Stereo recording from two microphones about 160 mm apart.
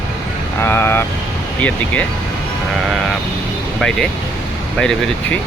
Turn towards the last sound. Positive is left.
turn(degrees=5)  # may be behind; listen again after turning